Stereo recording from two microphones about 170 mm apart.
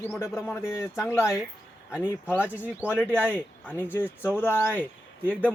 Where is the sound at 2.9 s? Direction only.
10° left (ahead or behind).